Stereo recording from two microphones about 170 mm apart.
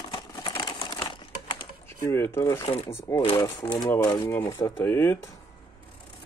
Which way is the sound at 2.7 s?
35° left (ahead or behind).